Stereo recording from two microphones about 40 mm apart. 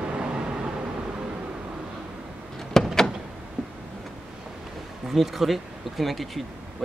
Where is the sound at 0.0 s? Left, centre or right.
Right.